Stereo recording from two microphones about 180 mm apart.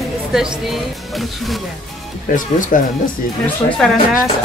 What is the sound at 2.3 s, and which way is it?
Speech, 45° left (ahead or behind).